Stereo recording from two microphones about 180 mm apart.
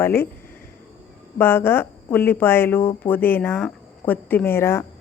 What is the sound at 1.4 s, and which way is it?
A woman's voice, 10° left (ahead or behind).